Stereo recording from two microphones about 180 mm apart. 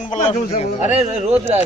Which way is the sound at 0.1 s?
35° left (ahead or behind).